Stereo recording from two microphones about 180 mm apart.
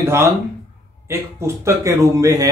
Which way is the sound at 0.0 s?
15° right (ahead or behind).